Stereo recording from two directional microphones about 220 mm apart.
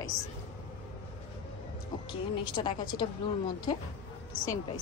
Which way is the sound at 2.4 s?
20° left (ahead or behind).